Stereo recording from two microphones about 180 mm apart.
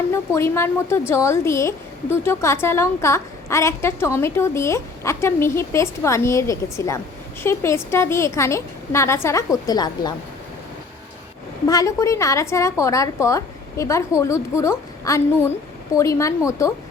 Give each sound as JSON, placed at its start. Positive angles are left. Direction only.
{"t": 0.1, "sound": "a woman's voice", "side_deg": 15}
{"t": 11.7, "sound": "a woman's voice", "side_deg": 20}